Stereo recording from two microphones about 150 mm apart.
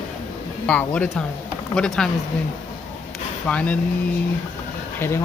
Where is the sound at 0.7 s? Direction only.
10° left (ahead or behind).